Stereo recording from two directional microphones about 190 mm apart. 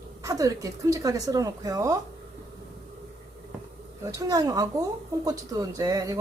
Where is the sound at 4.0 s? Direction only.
20° right (ahead or behind).